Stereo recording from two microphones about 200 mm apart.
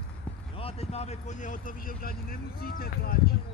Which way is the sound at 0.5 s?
30° left (ahead or behind).